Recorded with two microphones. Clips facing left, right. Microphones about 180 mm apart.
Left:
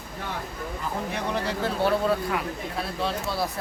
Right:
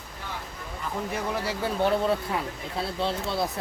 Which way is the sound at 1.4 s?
15° right (ahead or behind).